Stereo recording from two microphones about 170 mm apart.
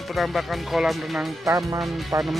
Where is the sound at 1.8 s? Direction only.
Centre (ahead or behind).